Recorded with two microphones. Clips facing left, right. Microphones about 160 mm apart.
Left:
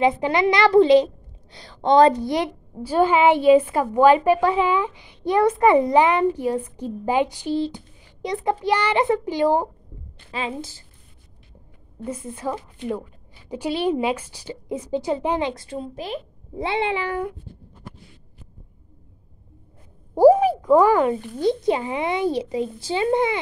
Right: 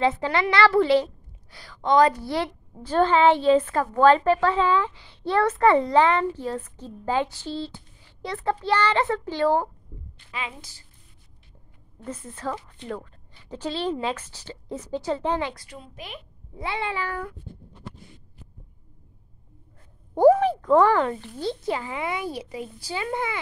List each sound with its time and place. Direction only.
0.0 s a woman's voice: 15° left (ahead or behind)
10.3 s a woman's voice: 30° left (ahead or behind)
12.0 s a woman's voice: 10° left (ahead or behind)
20.2 s speech: 10° left (ahead or behind)